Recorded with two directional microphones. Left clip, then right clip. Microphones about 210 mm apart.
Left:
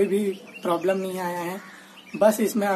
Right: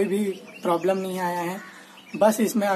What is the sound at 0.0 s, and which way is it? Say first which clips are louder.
A woman's voice: left 2 dB; 5° right (ahead or behind).